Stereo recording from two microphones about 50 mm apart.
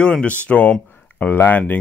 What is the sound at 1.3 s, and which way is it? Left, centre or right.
Speech, left.